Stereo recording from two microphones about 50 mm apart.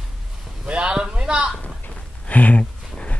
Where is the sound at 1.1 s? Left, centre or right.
Centre.